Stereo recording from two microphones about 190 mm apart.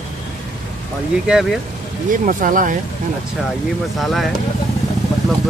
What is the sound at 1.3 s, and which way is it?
Speech, centre (ahead or behind).